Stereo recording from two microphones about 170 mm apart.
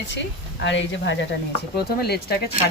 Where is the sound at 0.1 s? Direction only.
90° left; by 2.3 s 70° left (ahead or behind).